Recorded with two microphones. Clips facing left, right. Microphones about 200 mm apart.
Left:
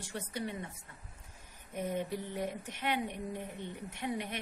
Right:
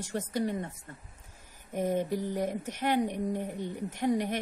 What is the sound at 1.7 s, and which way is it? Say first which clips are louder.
Speech: right 6 dB; 40° right (ahead or behind).